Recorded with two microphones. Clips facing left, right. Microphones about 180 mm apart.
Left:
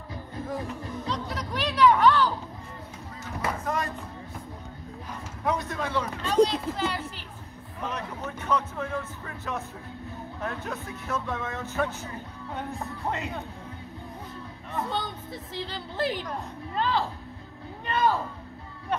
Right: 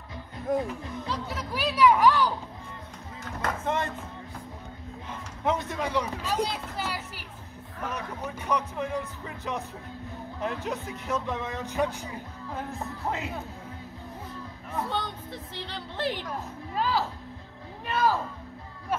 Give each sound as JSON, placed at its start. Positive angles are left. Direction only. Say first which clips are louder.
{"t": 0.7, "sound": "music", "louder": "left 1 dB", "side_deg": -5}
{"t": 3.6, "sound": "speech", "louder": "right 3 dB", "side_deg": -25}
{"t": 5.4, "sound": "speech", "louder": "right 1 dB", "side_deg": -20}
{"t": 12.5, "sound": "speech", "louder": "left 1 dB", "side_deg": 0}
{"t": 14.7, "sound": "a woman's voice", "louder": "even", "side_deg": 0}